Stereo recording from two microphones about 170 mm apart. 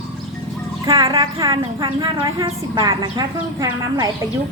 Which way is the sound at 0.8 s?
20° right (ahead or behind).